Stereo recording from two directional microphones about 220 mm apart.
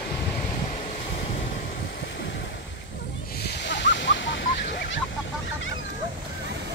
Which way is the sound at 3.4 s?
50° left (ahead or behind).